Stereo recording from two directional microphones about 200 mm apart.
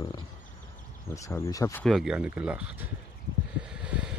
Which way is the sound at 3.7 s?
5° right (ahead or behind).